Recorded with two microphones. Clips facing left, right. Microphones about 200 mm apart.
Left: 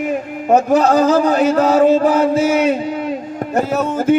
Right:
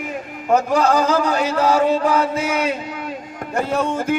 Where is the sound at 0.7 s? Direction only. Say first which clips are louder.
Left 5 dB; 30° left (ahead or behind).